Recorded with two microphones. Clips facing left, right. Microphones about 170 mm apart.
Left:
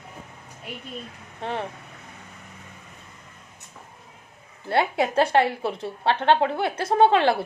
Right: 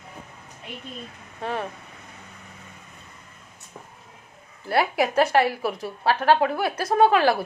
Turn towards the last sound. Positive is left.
turn(degrees=25)  # may be behind; listen again after turning